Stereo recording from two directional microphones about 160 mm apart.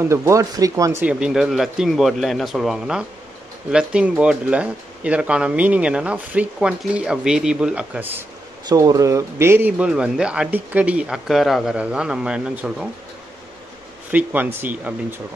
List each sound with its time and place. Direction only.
0.0 s speech: 20° right (ahead or behind)
1.0 s speech: 5° right (ahead or behind)
8.6 s speech: 20° right (ahead or behind); by 12.8 s 5° right (ahead or behind)
14.1 s speech: 10° right (ahead or behind)